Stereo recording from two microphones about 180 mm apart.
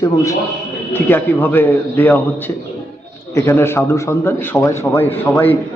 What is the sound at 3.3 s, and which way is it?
A man's voice, 15° left (ahead or behind).